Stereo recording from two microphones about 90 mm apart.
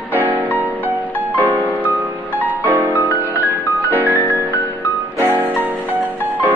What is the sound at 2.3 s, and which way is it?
Music, 20° right (ahead or behind).